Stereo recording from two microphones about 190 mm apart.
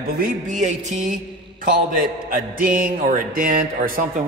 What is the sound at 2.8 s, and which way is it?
Speech, 50° right (ahead or behind).